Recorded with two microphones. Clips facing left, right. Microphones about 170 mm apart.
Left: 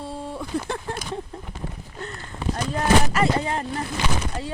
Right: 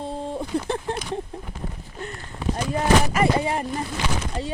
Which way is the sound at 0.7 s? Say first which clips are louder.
Right 3 dB; 25° right (ahead or behind).